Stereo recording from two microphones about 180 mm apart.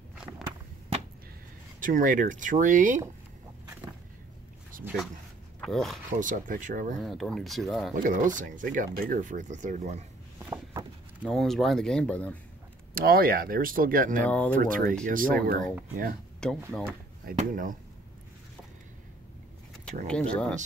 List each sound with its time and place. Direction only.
1.8 s speech: 50° right (ahead or behind)
5.6 s speech: centre (ahead or behind)
6.1 s speech: 45° right (ahead or behind)
7.0 s speech: centre (ahead or behind)
7.9 s speech: 45° right (ahead or behind)
10.5 s a sound: 20° right (ahead or behind)
11.2 s speech: centre (ahead or behind)
12.9 s speech: 55° right (ahead or behind)
14.2 s speech: 10° left (ahead or behind)
14.5 s speech: 50° right (ahead or behind)
16.4 s speech: 5° left (ahead or behind)
17.4 s speech: 50° right (ahead or behind)
20.1 s speech: 5° left (ahead or behind)